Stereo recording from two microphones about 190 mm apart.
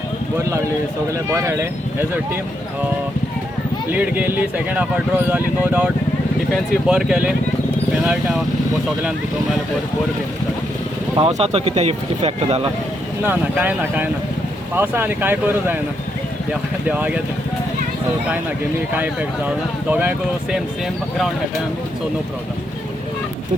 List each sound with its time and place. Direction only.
1.3 s speech: 15° right (ahead or behind)
3.9 s speech: 10° right (ahead or behind)
11.2 s speech: 35° right (ahead or behind)
13.2 s speech: 10° right (ahead or behind)
19.9 s speech: 10° right (ahead or behind)